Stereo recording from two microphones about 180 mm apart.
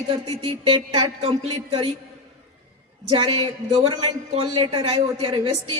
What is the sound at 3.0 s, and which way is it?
Speech, 25° right (ahead or behind).